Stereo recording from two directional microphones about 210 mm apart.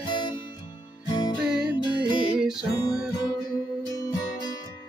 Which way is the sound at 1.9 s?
5° right (ahead or behind).